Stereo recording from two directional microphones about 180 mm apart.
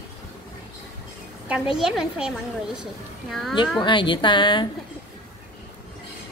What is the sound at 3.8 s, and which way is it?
Speech, 25° left (ahead or behind).